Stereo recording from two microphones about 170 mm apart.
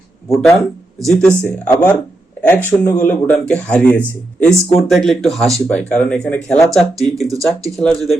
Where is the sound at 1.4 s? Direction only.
10° left (ahead or behind).